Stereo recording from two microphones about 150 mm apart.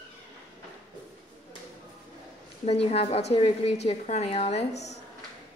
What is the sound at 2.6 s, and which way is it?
A woman's voice, 40° left (ahead or behind).